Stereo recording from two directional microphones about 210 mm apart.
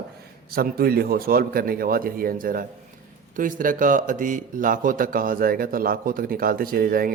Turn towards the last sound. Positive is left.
turn(degrees=-45)  # may be behind; listen again after turning